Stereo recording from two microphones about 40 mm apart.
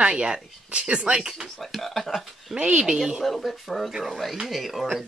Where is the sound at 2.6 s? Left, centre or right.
Right.